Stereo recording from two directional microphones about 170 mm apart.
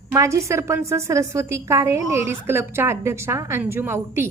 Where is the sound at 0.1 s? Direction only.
15° right (ahead or behind).